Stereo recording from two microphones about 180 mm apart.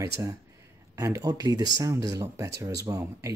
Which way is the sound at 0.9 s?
15° right (ahead or behind).